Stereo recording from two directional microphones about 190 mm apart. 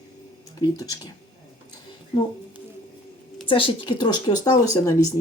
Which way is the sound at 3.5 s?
25° left (ahead or behind).